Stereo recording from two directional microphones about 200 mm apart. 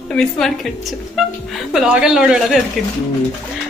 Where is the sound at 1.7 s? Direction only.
5° right (ahead or behind).